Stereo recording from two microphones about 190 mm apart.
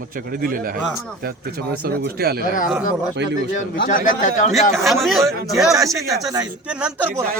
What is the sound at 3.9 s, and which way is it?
Speech, 45° left (ahead or behind).